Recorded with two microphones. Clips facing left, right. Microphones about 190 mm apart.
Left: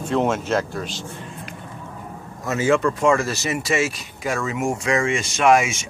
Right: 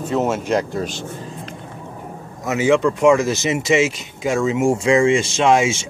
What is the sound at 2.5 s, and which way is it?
Speech, 15° right (ahead or behind).